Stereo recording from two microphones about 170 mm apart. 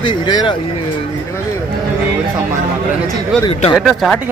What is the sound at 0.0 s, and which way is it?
Speech, 25° left (ahead or behind).